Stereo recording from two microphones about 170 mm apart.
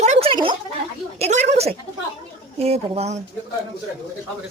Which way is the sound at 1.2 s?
40° right (ahead or behind).